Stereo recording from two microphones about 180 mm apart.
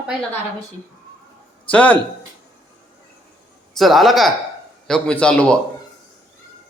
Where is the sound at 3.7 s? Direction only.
Centre (ahead or behind).